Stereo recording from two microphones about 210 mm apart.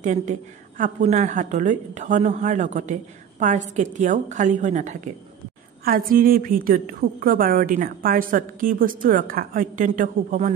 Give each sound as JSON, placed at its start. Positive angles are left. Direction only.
{"t": 0.0, "sound": "a woman's voice", "side_deg": -35}